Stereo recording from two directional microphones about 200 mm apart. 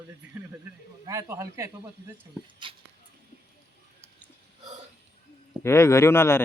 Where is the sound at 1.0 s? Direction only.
15° right (ahead or behind).